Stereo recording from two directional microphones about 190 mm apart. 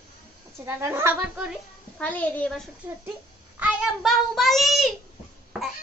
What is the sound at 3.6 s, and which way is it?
A child's voice, 5° right (ahead or behind).